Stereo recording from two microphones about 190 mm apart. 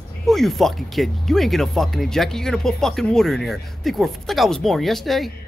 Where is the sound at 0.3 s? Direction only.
Centre (ahead or behind).